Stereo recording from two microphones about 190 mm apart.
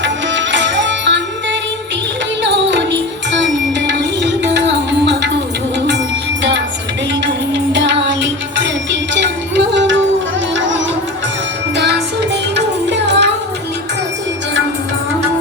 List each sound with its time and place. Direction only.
0.0 s music: 70° right (ahead or behind)
2.4 s music: 70° right (ahead or behind)
7.5 s music: 65° right (ahead or behind)
10.5 s sitar: 75° right (ahead or behind)
11.8 s music: 65° right (ahead or behind)